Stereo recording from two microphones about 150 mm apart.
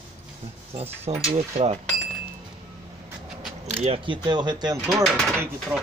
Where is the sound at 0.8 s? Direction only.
40° right (ahead or behind).